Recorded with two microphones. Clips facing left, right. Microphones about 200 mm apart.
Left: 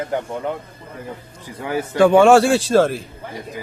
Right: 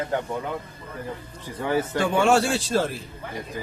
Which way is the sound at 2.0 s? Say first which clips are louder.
Left 11 dB; 90° left.